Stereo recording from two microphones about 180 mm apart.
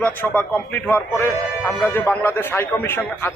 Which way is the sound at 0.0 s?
10° left (ahead or behind).